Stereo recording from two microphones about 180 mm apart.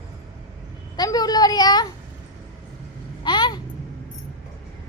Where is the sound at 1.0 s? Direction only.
20° left (ahead or behind).